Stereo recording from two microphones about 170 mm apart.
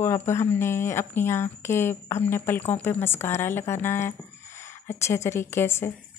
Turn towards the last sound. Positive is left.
turn(degrees=15)  # may be behind; listen again after turning